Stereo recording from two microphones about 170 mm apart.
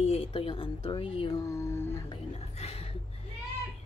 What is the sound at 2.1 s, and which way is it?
Whispering, 35° left (ahead or behind).